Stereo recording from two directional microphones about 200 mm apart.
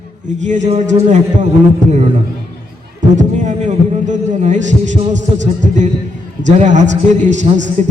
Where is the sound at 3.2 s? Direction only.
35° right (ahead or behind).